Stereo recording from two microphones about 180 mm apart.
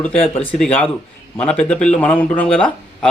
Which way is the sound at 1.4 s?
5° left (ahead or behind).